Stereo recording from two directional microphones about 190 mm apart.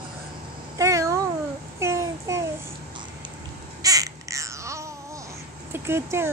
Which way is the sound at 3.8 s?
20° right (ahead or behind).